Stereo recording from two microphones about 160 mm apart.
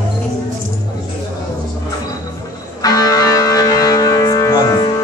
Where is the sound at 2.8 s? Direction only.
20° left (ahead or behind).